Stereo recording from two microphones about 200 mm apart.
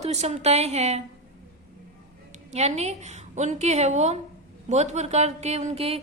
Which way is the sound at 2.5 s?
35° right (ahead or behind).